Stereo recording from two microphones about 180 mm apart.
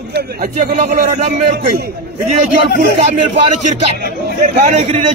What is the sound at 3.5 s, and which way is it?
Speech, 40° right (ahead or behind).